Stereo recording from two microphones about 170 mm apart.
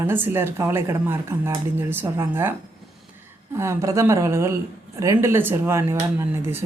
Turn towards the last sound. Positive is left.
turn(degrees=-15)  # may be behind; listen again after turning